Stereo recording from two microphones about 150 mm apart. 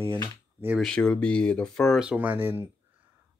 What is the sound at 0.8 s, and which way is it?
Speech, 5° left (ahead or behind).